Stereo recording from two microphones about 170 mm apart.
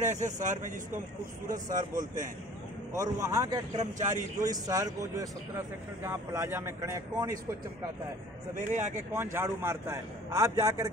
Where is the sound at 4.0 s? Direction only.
45° right (ahead or behind).